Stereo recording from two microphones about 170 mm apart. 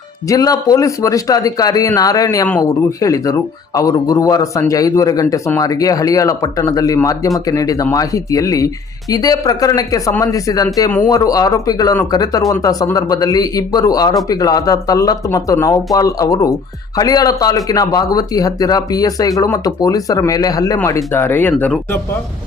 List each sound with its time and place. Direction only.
0.3 s speech: 20° left (ahead or behind)